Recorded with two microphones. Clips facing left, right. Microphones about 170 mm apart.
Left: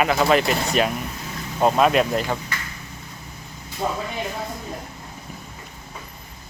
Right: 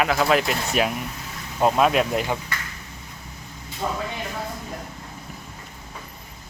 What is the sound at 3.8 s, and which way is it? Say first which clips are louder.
Speech: left 2 dB; 25° left (ahead or behind).